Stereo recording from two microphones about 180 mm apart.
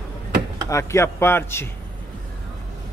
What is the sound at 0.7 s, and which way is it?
A man's voice, 15° left (ahead or behind).